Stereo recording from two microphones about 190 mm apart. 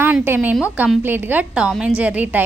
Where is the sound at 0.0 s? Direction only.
10° right (ahead or behind).